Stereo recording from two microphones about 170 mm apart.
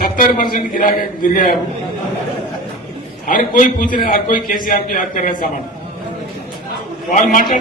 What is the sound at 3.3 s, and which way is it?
A man's voice, 50° left (ahead or behind).